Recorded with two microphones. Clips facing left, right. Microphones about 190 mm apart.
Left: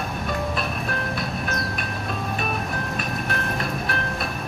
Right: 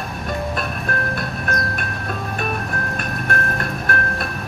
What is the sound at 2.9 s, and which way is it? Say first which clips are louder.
Music: right 3 dB; 50° right (ahead or behind).